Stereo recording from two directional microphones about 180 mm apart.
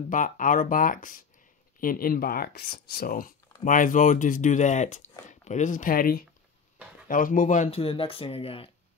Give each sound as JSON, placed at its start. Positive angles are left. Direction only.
{"t": 0.1, "sound": "speech", "side_deg": 45}